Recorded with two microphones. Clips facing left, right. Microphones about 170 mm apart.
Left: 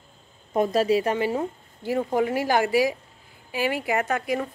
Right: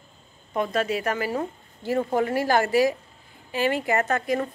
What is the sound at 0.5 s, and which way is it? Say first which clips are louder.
Speech: left 4 dB; 40° left (ahead or behind).